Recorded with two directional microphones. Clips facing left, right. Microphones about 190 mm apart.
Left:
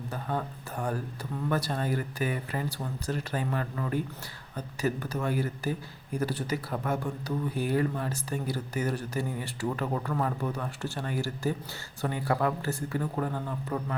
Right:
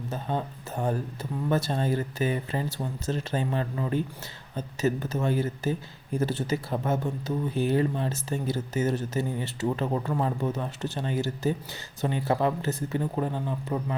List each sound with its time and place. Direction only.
0.1 s speech: 25° right (ahead or behind)